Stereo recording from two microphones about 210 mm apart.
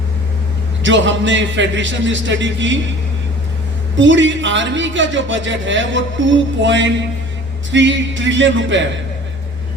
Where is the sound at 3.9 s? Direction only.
60° right (ahead or behind).